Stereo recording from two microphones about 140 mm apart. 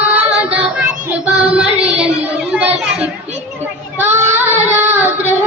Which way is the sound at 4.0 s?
15° right (ahead or behind).